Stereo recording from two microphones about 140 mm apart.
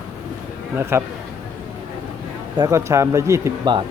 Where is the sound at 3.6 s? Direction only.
35° right (ahead or behind).